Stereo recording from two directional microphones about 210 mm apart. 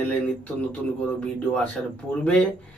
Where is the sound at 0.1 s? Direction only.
5° left (ahead or behind).